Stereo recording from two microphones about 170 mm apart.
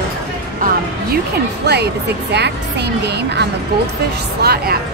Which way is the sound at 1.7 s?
75° right (ahead or behind).